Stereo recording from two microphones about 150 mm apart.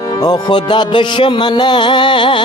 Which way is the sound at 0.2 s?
30° left (ahead or behind).